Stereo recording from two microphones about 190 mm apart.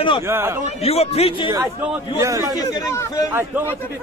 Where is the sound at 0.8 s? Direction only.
30° left (ahead or behind).